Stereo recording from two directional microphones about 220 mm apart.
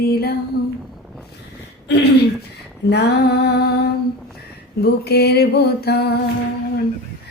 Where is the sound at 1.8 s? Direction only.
50° left (ahead or behind).